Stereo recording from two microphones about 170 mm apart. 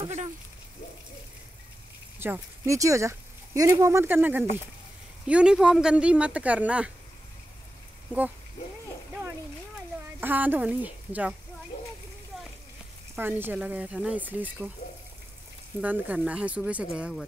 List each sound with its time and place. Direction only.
2.1 s speech: 10° right (ahead or behind)
8.1 s speech: 10° right (ahead or behind)
9.8 s a sound: 10° right (ahead or behind)
13.1 s speech: 10° right (ahead or behind)
15.8 s speech: 10° right (ahead or behind)